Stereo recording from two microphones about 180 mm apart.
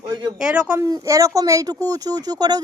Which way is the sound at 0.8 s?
20° right (ahead or behind).